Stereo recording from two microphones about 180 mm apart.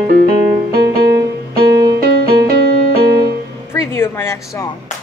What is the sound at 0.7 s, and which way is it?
Music, 55° right (ahead or behind).